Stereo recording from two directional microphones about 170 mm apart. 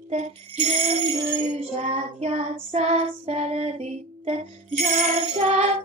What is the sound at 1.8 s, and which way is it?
Child singing, 40° right (ahead or behind).